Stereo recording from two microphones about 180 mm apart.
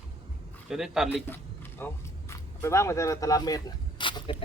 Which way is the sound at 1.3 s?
10° left (ahead or behind).